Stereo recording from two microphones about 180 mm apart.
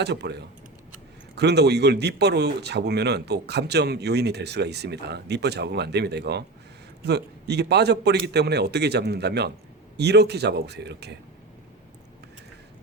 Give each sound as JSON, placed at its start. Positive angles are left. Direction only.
{"t": 0.0, "sound": "a man's voice", "side_deg": -70}